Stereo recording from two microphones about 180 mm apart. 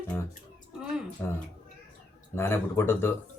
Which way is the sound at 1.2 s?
10° left (ahead or behind).